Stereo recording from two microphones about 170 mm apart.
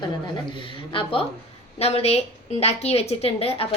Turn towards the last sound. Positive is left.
turn(degrees=35)  # may be behind; listen again after turning